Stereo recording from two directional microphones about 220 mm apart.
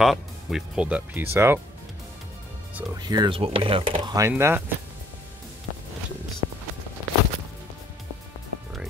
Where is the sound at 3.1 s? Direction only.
20° right (ahead or behind).